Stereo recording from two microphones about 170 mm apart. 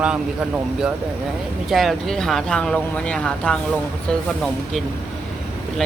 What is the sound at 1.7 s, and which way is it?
Speech, centre (ahead or behind).